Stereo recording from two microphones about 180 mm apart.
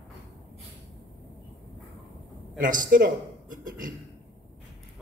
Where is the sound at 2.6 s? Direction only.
50° right (ahead or behind).